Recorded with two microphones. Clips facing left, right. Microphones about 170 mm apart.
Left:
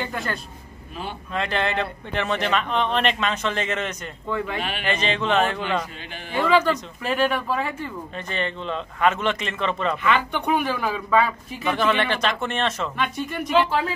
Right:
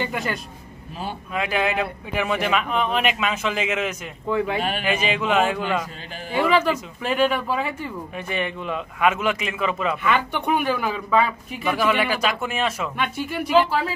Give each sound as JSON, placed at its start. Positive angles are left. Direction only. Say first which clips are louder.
{"t": 0.1, "sound": "a man's voice", "louder": "right 2 dB", "side_deg": 0}
{"t": 4.6, "sound": "speech", "louder": "right 4 dB", "side_deg": -40}
{"t": 4.8, "sound": "a man's voice", "louder": "left 2 dB", "side_deg": -10}